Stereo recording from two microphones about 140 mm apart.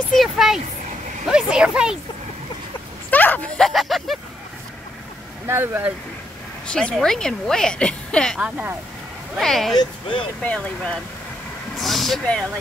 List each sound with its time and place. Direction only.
0.1 s speech: centre (ahead or behind)
3.1 s speech: 10° left (ahead or behind)
3.6 s a woman's voice: centre (ahead or behind)
5.5 s speech: 15° right (ahead or behind)
6.7 s a woman's voice: 5° left (ahead or behind)
8.4 s speech: 10° right (ahead or behind)
9.4 s a woman's voice: 5° left (ahead or behind)